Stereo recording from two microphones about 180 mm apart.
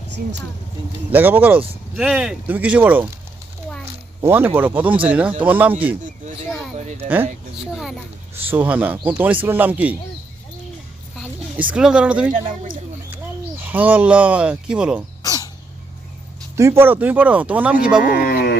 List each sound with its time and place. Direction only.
1.1 s speech: 10° right (ahead or behind)
4.2 s speech: 10° right (ahead or behind)
6.7 s speech: 40° right (ahead or behind)
7.7 s speech: centre (ahead or behind)
11.2 s speech: 10° right (ahead or behind)
13.6 s speech: 10° right (ahead or behind)
15.2 s cough: 20° left (ahead or behind)
16.6 s speech: 15° right (ahead or behind)
18.1 s a sound: 55° left (ahead or behind)